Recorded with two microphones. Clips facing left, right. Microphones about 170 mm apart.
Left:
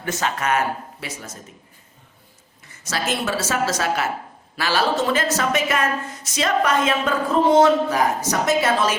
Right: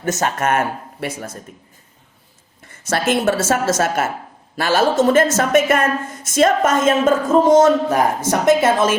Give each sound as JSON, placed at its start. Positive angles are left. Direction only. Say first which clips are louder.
{"t": 0.0, "sound": "a woman's voice", "louder": "right 5 dB", "side_deg": -45}
{"t": 2.6, "sound": "a woman's voice", "louder": "right 6 dB", "side_deg": -55}